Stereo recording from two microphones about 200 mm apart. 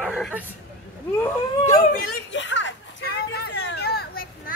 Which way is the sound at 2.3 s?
65° left (ahead or behind).